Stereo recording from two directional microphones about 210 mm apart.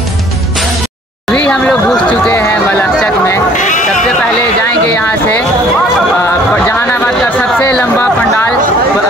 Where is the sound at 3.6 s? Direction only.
35° left (ahead or behind).